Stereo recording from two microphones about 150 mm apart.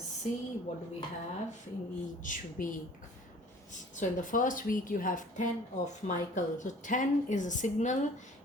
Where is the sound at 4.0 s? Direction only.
60° left (ahead or behind).